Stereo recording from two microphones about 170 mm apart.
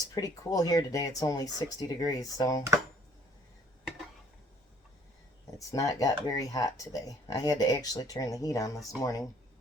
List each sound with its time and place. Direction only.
0.0 s speech: 20° left (ahead or behind)
5.5 s speech: 20° left (ahead or behind)